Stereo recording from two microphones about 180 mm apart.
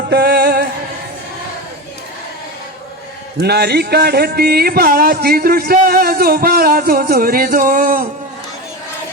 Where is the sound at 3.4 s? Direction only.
65° right (ahead or behind); by 8.1 s 50° right (ahead or behind).